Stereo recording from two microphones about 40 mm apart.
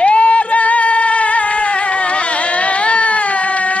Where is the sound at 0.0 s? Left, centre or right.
Left.